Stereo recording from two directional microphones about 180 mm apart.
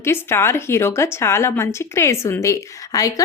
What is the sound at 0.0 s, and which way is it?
Speech, 15° left (ahead or behind).